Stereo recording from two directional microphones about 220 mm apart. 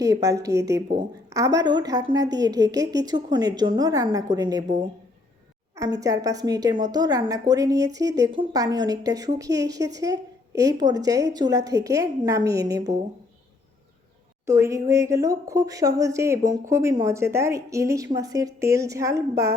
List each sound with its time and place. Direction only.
0.0 s a woman's voice: 15° right (ahead or behind)
14.4 s a woman's voice: 10° right (ahead or behind)